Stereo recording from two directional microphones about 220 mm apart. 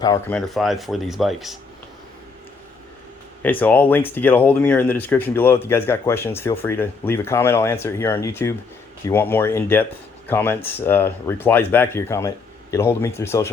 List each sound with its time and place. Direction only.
0.0 s speech: 15° left (ahead or behind)
0.3 s speech: centre (ahead or behind)
3.4 s speech: 10° left (ahead or behind)